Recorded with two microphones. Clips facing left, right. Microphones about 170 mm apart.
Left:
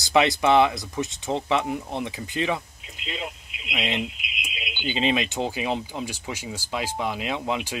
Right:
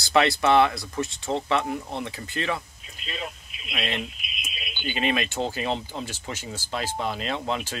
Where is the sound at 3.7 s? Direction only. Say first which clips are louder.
Left 2 dB; 15° left (ahead or behind).